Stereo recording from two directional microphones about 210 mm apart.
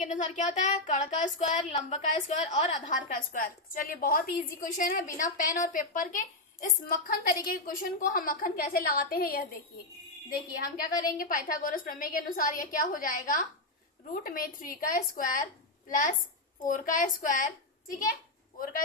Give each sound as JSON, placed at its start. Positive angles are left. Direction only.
{"t": 0.0, "sound": "a woman's voice", "side_deg": 35}
{"t": 11.2, "sound": "speech", "side_deg": 40}